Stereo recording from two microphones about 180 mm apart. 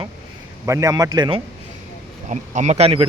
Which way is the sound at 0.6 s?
15° right (ahead or behind).